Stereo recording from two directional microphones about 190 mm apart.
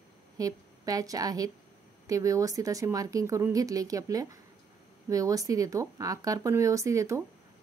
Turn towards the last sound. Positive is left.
turn(degrees=-15)  # may be behind; listen again after turning